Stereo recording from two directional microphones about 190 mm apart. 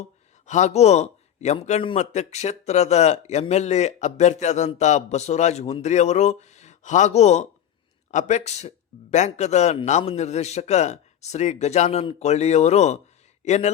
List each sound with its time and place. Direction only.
0.4 s a man's voice: 40° left (ahead or behind)